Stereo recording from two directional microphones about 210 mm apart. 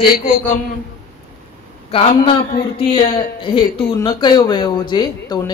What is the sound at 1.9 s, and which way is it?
Speech, 25° left (ahead or behind).